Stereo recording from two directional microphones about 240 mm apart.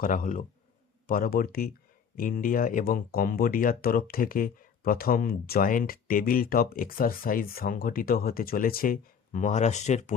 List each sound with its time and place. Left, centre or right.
0.0 s speech: left